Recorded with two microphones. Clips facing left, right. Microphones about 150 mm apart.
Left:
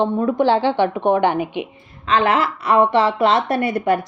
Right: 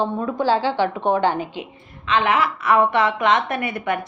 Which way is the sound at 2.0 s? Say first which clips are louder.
Left 2 dB; 40° left (ahead or behind).